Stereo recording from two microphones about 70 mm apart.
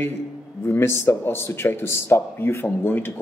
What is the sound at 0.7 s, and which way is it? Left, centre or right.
A man's voice, left.